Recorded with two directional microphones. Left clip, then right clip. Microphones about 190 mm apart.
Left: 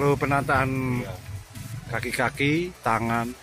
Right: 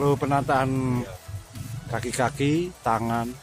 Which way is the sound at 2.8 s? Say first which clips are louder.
Left 1 dB; centre (ahead or behind).